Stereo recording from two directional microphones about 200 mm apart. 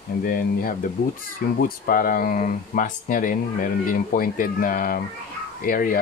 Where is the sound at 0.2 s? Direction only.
45° left (ahead or behind).